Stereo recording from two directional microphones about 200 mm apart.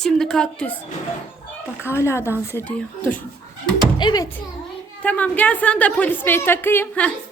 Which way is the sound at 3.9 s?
20° left (ahead or behind).